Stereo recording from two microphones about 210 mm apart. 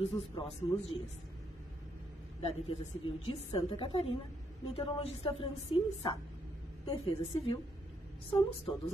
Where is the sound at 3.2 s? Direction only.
25° left (ahead or behind).